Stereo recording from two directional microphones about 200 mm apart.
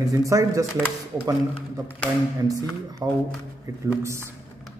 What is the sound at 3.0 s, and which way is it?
Speech, 15° right (ahead or behind).